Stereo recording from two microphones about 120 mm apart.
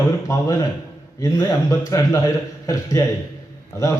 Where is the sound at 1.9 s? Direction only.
25° left (ahead or behind).